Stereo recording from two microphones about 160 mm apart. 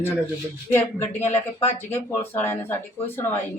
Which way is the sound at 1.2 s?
40° left (ahead or behind).